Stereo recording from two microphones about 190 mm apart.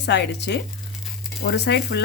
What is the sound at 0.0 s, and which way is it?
Speech, 65° left (ahead or behind).